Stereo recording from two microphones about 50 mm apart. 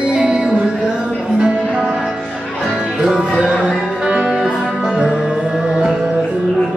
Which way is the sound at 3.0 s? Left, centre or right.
Centre.